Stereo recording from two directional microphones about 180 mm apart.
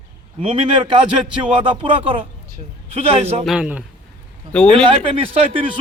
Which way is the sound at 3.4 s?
5° right (ahead or behind).